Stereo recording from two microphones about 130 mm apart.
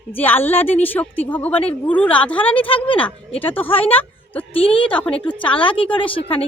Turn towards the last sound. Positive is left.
turn(degrees=40)  # may be behind; listen again after turning